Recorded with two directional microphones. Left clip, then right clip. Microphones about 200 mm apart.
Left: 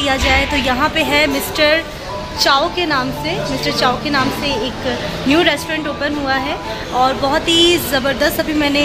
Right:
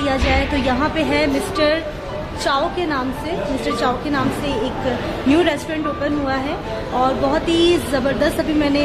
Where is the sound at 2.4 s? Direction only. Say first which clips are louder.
Left 5 dB; 15° left (ahead or behind).